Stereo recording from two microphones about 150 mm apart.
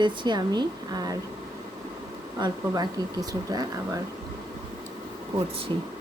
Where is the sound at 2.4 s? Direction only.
25° right (ahead or behind).